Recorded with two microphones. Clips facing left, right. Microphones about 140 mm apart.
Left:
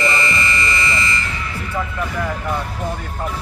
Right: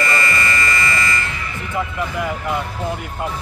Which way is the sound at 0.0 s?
20° left (ahead or behind).